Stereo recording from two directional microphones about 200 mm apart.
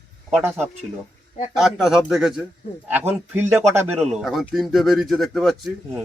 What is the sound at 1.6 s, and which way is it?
Speech, centre (ahead or behind).